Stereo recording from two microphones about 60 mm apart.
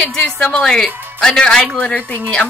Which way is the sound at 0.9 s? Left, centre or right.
Right.